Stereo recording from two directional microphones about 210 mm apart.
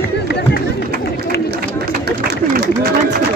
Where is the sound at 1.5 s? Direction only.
50° right (ahead or behind).